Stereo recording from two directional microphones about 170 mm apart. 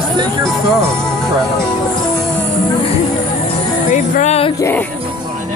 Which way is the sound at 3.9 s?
45° left (ahead or behind).